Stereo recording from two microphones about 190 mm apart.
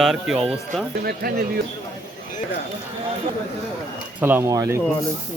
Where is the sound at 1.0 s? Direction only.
50° right (ahead or behind).